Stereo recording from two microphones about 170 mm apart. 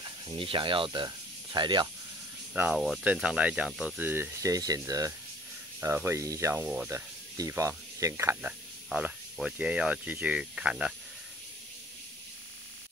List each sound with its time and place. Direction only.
0.0 s speech: 30° right (ahead or behind)
2.5 s speech: 10° right (ahead or behind)
6.6 s speech: 5° right (ahead or behind)
6.9 s speech: 15° right (ahead or behind)